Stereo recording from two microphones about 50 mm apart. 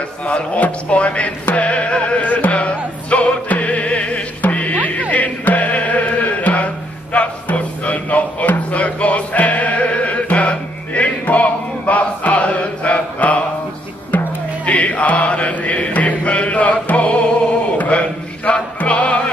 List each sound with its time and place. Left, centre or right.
0.3 s music: left
14.7 s chant: left
16.8 s music: left